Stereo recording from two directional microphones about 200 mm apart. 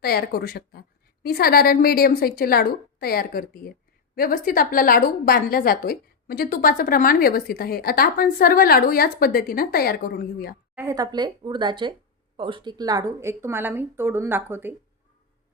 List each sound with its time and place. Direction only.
0.0 s a woman's voice: 50° left (ahead or behind)
10.8 s a woman's voice: 15° right (ahead or behind)